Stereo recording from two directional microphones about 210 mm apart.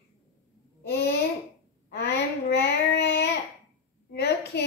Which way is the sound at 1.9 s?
55° left (ahead or behind).